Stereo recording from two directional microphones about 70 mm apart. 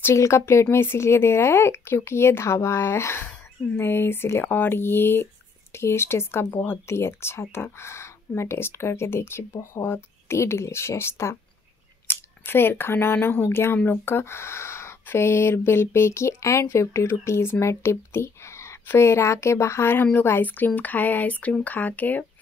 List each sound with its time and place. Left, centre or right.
0.0 s speech: left